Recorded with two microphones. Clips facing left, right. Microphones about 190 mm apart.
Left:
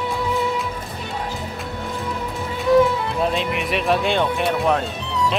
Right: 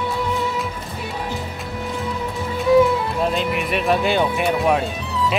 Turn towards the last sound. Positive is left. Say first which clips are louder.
# even
turn(degrees=-5)  # may be behind; listen again after turning